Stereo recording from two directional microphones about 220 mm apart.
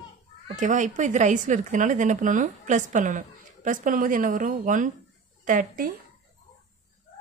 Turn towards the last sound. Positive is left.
turn(degrees=-40)  # may be behind; listen again after turning